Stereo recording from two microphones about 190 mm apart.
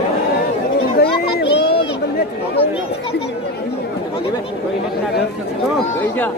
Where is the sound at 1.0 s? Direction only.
60° left (ahead or behind).